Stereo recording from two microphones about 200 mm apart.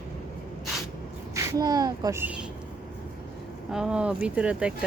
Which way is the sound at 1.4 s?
15° right (ahead or behind).